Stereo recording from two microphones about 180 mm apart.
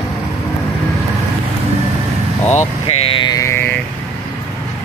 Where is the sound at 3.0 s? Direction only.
30° left (ahead or behind); by 3.8 s 15° left (ahead or behind).